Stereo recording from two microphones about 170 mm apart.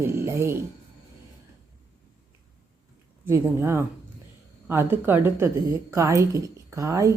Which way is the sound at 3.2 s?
15° right (ahead or behind).